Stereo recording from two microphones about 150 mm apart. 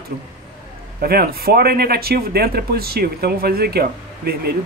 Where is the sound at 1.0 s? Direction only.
90° right.